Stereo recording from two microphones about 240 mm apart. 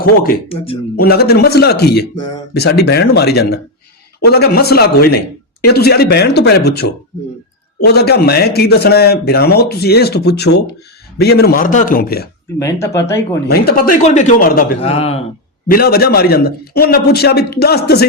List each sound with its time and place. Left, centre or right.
0.4 s a man's voice: left
0.9 s speech: left
12.5 s speech: centre
13.5 s speech: left
14.8 s a man's voice: left
15.6 s speech: left